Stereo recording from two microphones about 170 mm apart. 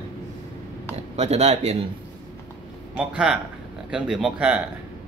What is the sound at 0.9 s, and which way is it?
Speech, 40° right (ahead or behind).